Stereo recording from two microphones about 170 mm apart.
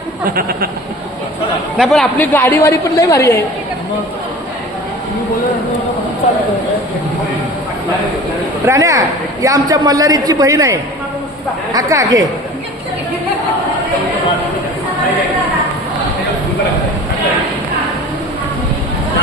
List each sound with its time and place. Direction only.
0.3 s speech: 60° right (ahead or behind)
1.7 s a woman's voice: centre (ahead or behind); by 3.4 s 15° left (ahead or behind)
8.6 s a woman's voice: 20° right (ahead or behind)